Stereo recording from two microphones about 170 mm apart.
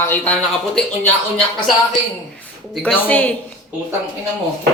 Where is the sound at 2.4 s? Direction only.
10° left (ahead or behind).